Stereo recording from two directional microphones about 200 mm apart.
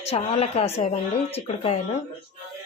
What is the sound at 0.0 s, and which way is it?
Speech, 30° left (ahead or behind).